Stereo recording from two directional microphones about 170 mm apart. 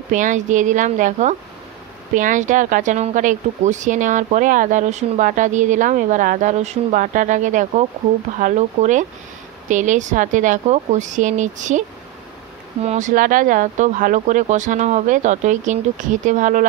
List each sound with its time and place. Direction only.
0.1 s speech: 50° right (ahead or behind)
12.8 s speech: 45° right (ahead or behind)